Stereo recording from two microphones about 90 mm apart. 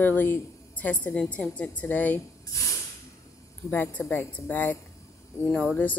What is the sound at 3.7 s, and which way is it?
Speech, 20° left (ahead or behind).